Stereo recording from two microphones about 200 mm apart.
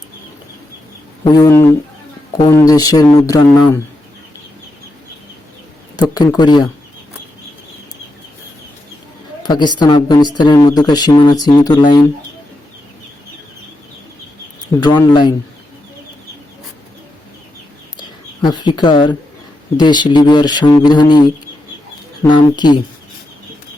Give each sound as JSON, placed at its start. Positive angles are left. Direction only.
{"t": 1.2, "sound": "speech", "side_deg": 20}
{"t": 6.0, "sound": "speech", "side_deg": 20}
{"t": 9.5, "sound": "speech", "side_deg": 20}
{"t": 14.8, "sound": "speech", "side_deg": 20}
{"t": 18.4, "sound": "speech", "side_deg": 20}